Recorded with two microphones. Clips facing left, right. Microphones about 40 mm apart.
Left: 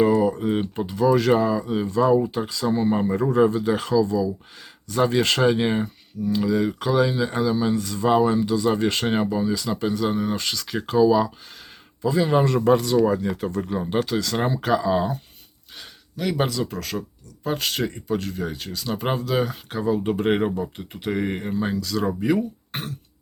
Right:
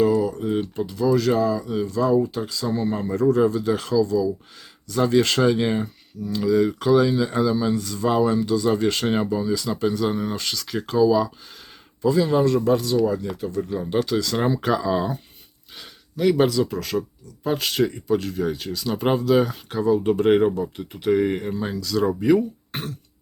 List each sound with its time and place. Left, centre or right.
0.0 s speech: left; by 11.3 s centre
12.1 s speech: left
13.4 s speech: left
13.8 s speech: centre